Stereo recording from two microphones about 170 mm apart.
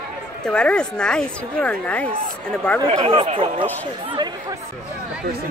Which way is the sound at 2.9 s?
35° right (ahead or behind).